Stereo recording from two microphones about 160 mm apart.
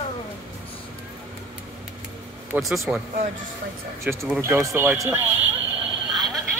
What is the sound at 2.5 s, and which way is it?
Speech, centre (ahead or behind).